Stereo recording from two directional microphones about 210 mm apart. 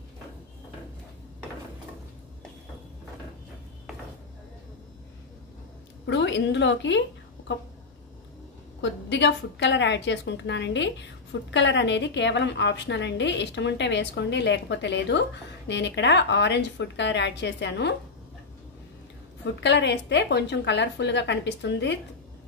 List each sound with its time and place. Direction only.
6.0 s a woman's voice: 55° left (ahead or behind)
8.8 s a woman's voice: 55° left (ahead or behind)
19.4 s a woman's voice: 55° left (ahead or behind)